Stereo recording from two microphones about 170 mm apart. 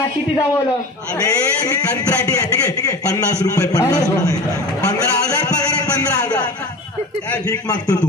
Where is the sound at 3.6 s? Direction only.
20° left (ahead or behind).